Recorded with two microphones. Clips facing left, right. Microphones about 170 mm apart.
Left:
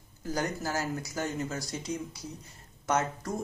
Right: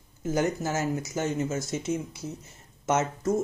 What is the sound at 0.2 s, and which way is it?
Speech, 20° right (ahead or behind).